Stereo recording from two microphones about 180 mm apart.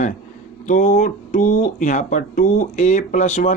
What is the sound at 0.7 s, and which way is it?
Speech, 45° left (ahead or behind).